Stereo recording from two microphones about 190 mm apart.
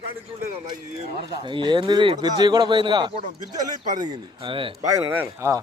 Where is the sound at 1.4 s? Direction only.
25° right (ahead or behind).